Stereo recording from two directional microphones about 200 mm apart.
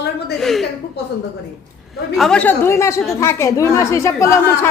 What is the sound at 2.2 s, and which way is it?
A woman's voice, 5° left (ahead or behind).